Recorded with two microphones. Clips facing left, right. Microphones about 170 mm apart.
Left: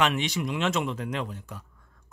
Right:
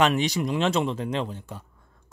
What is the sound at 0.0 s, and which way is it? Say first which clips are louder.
Speech: right 4 dB; 40° right (ahead or behind).